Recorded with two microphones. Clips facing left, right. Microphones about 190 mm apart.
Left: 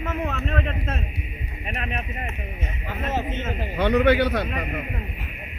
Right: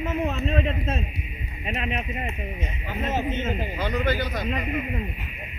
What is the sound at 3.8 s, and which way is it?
A man's voice, 70° left (ahead or behind).